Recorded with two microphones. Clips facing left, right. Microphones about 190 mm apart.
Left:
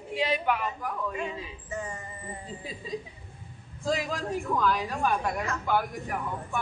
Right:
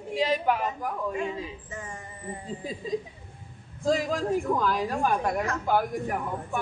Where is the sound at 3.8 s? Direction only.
45° right (ahead or behind).